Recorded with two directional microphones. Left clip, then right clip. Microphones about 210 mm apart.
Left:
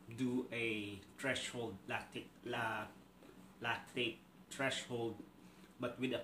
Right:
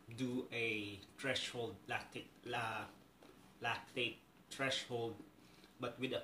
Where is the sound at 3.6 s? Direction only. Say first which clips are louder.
Left 1 dB; 15° left (ahead or behind).